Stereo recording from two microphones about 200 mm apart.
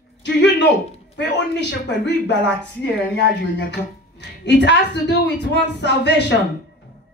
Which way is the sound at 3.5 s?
60° left (ahead or behind).